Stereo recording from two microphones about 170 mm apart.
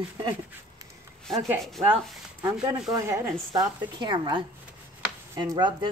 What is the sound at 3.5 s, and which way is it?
A woman's voice, 25° right (ahead or behind).